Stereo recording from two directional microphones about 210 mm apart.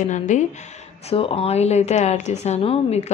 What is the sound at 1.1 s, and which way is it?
A woman's voice, 25° left (ahead or behind).